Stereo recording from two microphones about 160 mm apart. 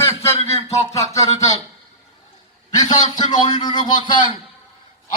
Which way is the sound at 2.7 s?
25° left (ahead or behind).